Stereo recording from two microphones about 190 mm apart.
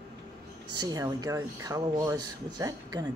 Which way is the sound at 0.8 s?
20° right (ahead or behind).